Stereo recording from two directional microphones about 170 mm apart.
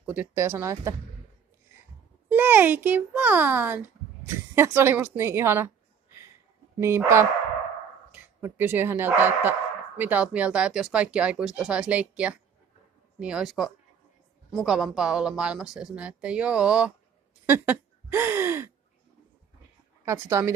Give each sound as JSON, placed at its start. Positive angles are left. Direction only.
{"t": 0.0, "sound": "speech", "side_deg": -10}
{"t": 2.2, "sound": "speech", "side_deg": -10}
{"t": 6.8, "sound": "speech", "side_deg": -15}
{"t": 20.1, "sound": "speech", "side_deg": -15}